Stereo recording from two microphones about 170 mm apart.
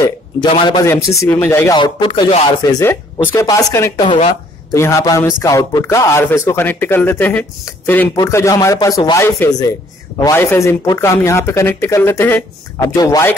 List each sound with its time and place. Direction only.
0.5 s speech: 25° left (ahead or behind)
0.8 s speech: 15° left (ahead or behind)
1.8 s speech: 30° left (ahead or behind)
2.8 s speech: 15° left (ahead or behind)
4.0 s speech: 30° left (ahead or behind)
4.7 s speech: 15° left (ahead or behind)